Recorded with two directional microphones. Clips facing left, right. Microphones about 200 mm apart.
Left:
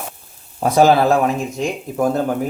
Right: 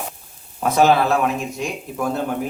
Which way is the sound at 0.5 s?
35° left (ahead or behind).